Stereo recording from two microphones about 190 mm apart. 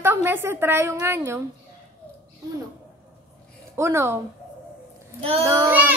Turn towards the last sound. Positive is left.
turn(degrees=-10)  # may be behind; listen again after turning